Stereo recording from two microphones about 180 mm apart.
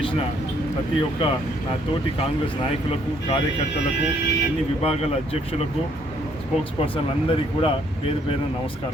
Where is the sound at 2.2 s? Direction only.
30° left (ahead or behind).